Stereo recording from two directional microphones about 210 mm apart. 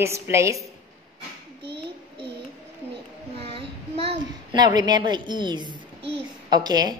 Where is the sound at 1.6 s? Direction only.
25° right (ahead or behind).